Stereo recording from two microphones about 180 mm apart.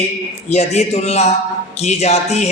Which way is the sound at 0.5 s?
35° left (ahead or behind).